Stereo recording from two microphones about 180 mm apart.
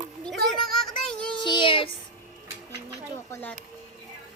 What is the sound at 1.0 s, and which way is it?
Child singing, 5° left (ahead or behind).